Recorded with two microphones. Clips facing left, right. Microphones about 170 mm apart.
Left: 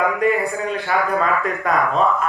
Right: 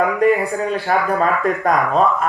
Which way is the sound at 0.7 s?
40° right (ahead or behind).